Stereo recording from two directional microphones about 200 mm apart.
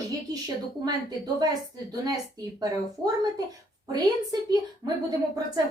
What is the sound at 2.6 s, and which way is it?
Speech, 20° right (ahead or behind).